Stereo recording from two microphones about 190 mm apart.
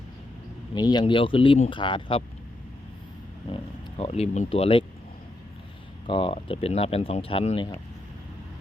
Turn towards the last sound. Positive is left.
turn(degrees=30)  # may be behind; listen again after turning